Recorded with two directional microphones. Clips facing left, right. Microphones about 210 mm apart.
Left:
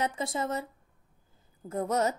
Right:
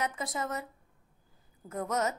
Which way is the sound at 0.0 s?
30° left (ahead or behind).